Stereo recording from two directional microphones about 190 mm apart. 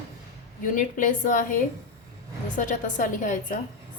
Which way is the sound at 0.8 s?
45° left (ahead or behind).